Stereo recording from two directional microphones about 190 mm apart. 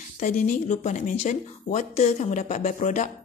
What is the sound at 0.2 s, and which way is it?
Speech, 40° left (ahead or behind).